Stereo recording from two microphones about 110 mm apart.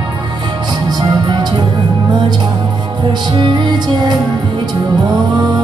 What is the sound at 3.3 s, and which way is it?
Music, 40° right (ahead or behind).